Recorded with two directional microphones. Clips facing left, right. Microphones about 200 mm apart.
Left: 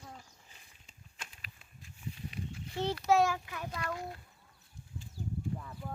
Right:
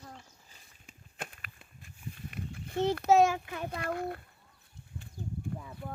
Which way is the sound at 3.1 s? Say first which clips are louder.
Right 3 dB; 20° right (ahead or behind).